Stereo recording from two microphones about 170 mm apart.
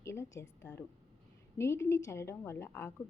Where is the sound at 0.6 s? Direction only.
15° left (ahead or behind).